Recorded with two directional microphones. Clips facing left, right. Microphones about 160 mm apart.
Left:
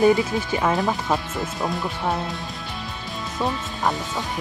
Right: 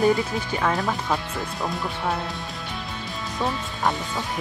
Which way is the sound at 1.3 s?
5° left (ahead or behind).